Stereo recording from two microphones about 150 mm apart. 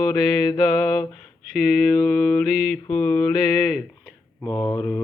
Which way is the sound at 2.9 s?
15° left (ahead or behind).